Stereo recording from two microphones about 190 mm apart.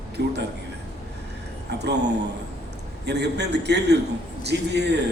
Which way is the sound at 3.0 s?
60° right (ahead or behind).